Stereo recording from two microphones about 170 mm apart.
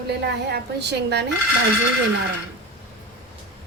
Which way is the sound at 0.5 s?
80° right.